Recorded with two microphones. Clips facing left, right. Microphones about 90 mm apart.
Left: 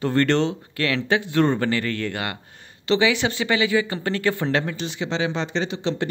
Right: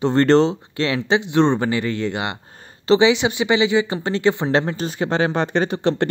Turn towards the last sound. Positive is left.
turn(degrees=-55)  # may be behind; listen again after turning